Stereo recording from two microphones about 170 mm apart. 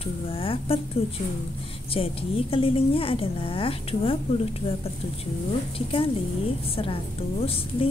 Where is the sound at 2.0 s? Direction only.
35° left (ahead or behind).